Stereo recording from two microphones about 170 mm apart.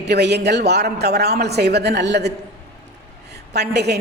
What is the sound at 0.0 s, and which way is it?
A woman's voice, 80° right.